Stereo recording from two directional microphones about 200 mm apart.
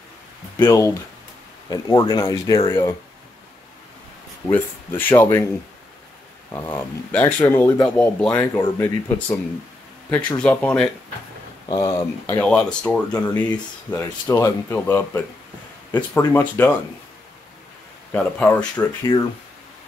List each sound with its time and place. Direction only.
0.6 s speech: 15° left (ahead or behind)
4.5 s speech: 10° left (ahead or behind)
6.5 s speech: 10° left (ahead or behind)
10.4 s speech: 5° left (ahead or behind)
11.7 s speech: 20° left (ahead or behind)
18.1 s speech: 10° left (ahead or behind)
19.1 s speech: 25° left (ahead or behind)